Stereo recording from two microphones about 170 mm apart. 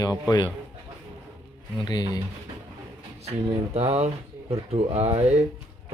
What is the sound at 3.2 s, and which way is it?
Speech, 40° right (ahead or behind).